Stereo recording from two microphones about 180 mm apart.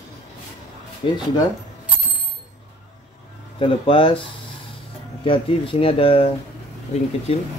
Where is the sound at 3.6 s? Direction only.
30° left (ahead or behind).